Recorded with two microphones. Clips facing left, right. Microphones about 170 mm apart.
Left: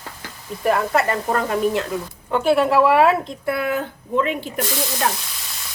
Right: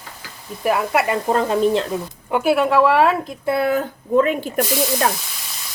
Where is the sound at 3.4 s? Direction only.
35° right (ahead or behind).